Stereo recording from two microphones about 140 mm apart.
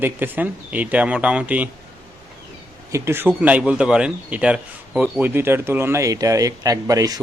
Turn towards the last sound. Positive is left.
turn(degrees=-25)  # may be behind; listen again after turning